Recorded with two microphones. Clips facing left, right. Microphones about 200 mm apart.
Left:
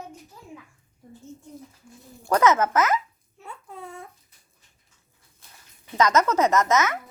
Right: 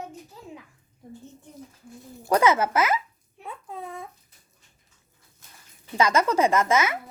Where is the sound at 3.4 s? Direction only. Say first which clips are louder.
Right 3 dB; 15° right (ahead or behind).